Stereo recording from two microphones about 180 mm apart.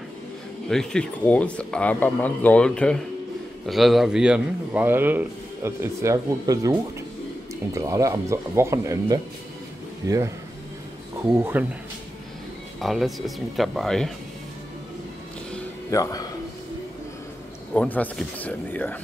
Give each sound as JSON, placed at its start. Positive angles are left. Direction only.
{"t": 0.7, "sound": "speech", "side_deg": 5}
{"t": 11.3, "sound": "speech", "side_deg": -10}
{"t": 12.8, "sound": "speech", "side_deg": 0}
{"t": 15.9, "sound": "a man's voice", "side_deg": 20}
{"t": 17.7, "sound": "speech", "side_deg": 10}